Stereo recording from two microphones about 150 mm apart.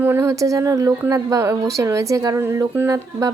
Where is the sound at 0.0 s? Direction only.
15° right (ahead or behind).